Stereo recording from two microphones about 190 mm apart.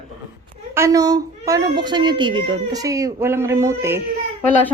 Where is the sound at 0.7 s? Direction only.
15° right (ahead or behind).